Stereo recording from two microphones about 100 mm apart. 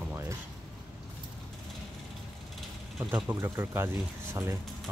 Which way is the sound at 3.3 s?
25° right (ahead or behind).